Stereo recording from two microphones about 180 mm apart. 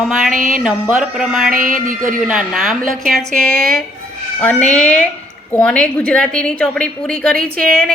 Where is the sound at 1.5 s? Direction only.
50° right (ahead or behind).